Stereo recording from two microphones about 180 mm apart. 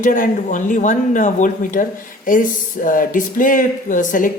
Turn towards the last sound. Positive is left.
turn(degrees=45)  # may be behind; listen again after turning